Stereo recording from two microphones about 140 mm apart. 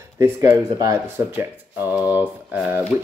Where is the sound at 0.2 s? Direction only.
20° right (ahead or behind).